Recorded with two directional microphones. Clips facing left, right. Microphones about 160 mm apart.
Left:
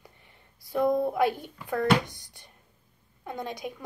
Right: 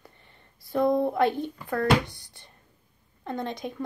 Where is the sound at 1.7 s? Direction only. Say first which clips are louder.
Even; 20° left (ahead or behind).